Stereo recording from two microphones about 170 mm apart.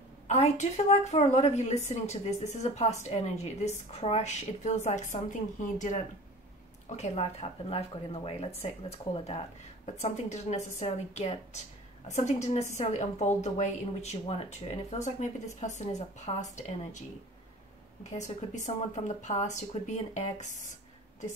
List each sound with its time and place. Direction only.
0.3 s a woman's voice: 40° left (ahead or behind)
18.1 s speech: 45° left (ahead or behind)